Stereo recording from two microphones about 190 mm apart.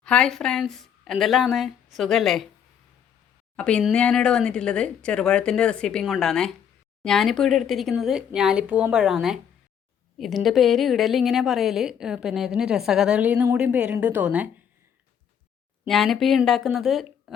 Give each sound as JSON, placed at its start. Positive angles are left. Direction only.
{"t": 0.0, "sound": "a woman's voice", "side_deg": 5}
{"t": 3.5, "sound": "a woman's voice", "side_deg": 5}
{"t": 15.9, "sound": "a woman's voice", "side_deg": 0}